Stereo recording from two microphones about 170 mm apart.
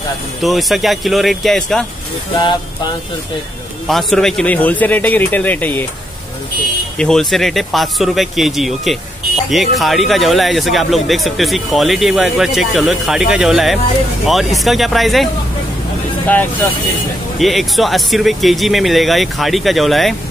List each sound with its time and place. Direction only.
0.4 s speech: centre (ahead or behind)
2.3 s speech: 30° left (ahead or behind)
3.8 s speech: centre (ahead or behind)
7.0 s speech: 5° left (ahead or behind)
17.4 s speech: centre (ahead or behind)